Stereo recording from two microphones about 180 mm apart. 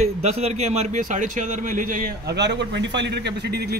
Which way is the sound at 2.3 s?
75° right (ahead or behind).